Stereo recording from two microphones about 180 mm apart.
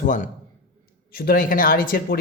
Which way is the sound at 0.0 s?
45° left (ahead or behind).